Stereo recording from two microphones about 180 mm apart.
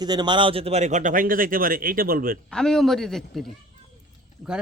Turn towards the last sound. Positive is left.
turn(degrees=-5)  # may be behind; listen again after turning